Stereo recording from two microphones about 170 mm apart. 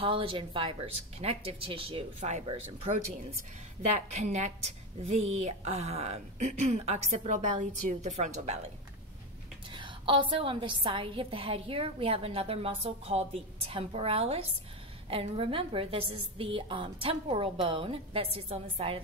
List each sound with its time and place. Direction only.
0.0 s a woman's voice: 30° right (ahead or behind)
4.2 s a woman's voice: 45° right (ahead or behind)
9.8 s a woman's voice: 30° right (ahead or behind)